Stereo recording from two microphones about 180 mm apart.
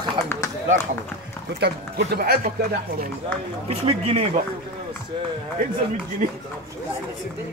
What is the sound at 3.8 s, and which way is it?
Speech, 35° right (ahead or behind).